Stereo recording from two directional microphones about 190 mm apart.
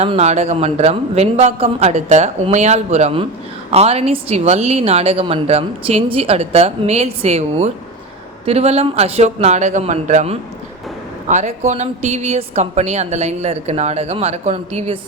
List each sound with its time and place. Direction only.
0.0 s a woman's voice: 35° right (ahead or behind)